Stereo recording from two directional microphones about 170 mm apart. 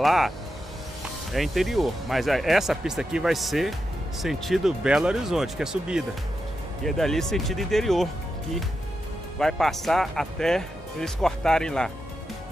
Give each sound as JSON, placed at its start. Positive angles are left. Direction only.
{"t": 0.0, "sound": "speech", "side_deg": 0}
{"t": 1.3, "sound": "speech", "side_deg": 0}
{"t": 9.4, "sound": "speech", "side_deg": 0}